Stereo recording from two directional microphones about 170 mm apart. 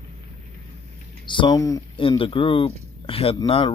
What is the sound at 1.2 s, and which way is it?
Speech, 30° left (ahead or behind).